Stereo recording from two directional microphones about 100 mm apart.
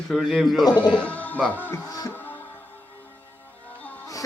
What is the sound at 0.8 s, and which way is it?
Speech, 10° left (ahead or behind).